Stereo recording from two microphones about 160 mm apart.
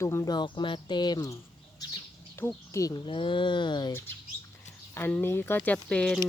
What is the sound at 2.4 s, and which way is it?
Speech, 20° left (ahead or behind).